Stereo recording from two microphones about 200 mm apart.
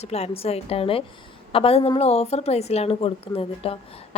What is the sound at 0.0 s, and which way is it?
A woman's voice, 30° left (ahead or behind).